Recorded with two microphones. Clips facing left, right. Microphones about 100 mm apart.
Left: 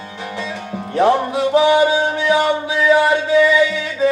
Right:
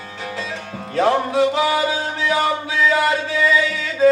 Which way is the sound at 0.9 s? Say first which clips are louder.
Left 2 dB; 20° left (ahead or behind).